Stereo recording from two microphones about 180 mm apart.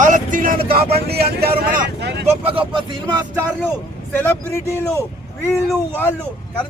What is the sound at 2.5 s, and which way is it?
Speech, 30° right (ahead or behind).